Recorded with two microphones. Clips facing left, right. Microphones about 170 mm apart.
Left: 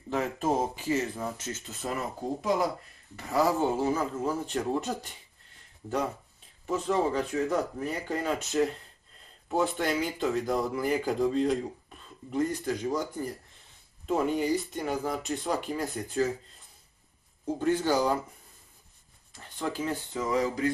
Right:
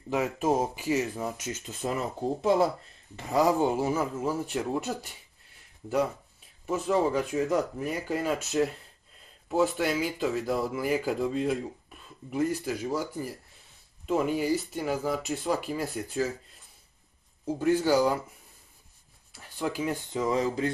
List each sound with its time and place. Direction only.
0.1 s speech: 10° right (ahead or behind)
3.2 s speech: 20° right (ahead or behind)
6.6 s speech: 10° right (ahead or behind)
17.5 s speech: 10° right (ahead or behind)
19.3 s speech: 10° right (ahead or behind)